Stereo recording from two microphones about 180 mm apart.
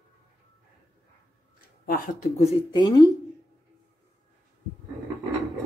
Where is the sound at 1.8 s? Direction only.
55° left (ahead or behind).